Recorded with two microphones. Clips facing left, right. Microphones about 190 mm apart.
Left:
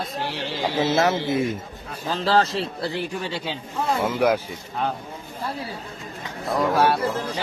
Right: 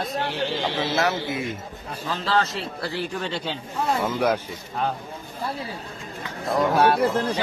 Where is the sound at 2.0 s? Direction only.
35° left (ahead or behind).